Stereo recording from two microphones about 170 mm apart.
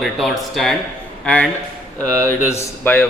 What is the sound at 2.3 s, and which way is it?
Speech, 15° left (ahead or behind).